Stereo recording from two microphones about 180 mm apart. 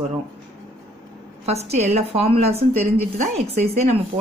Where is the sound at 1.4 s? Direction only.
35° right (ahead or behind).